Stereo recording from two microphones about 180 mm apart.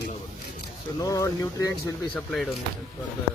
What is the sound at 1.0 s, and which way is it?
Speech, 20° left (ahead or behind).